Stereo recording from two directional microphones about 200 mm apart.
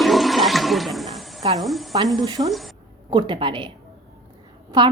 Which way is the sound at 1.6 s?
Centre (ahead or behind).